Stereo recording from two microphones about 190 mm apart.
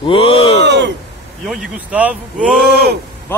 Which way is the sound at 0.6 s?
65° right (ahead or behind).